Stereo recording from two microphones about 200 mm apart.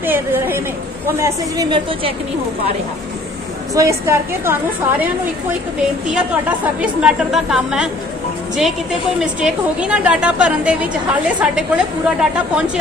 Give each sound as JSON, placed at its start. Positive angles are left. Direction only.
{"t": 0.0, "sound": "a sound", "side_deg": -10}
{"t": 1.2, "sound": "a woman's voice", "side_deg": -20}
{"t": 3.7, "sound": "a woman's voice", "side_deg": -15}
{"t": 6.1, "sound": "a woman's voice", "side_deg": -5}
{"t": 9.2, "sound": "a woman's voice", "side_deg": -5}